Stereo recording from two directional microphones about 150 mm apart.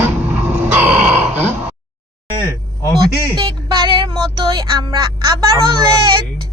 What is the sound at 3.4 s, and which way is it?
Music, 25° right (ahead or behind).